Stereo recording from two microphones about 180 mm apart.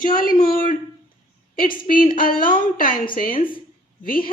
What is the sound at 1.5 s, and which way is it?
A woman's voice, 50° left (ahead or behind).